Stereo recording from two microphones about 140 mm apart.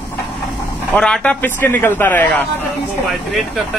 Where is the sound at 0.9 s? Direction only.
5° left (ahead or behind).